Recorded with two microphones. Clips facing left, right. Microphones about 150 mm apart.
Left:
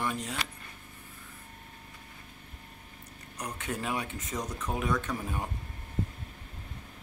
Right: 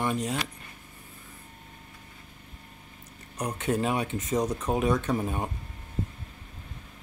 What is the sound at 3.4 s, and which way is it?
Speech, 25° right (ahead or behind).